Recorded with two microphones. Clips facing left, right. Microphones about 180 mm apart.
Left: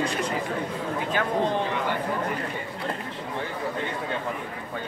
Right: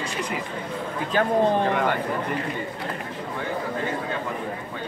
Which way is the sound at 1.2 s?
35° right (ahead or behind).